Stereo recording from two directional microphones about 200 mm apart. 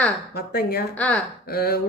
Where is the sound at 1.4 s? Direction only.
50° left (ahead or behind).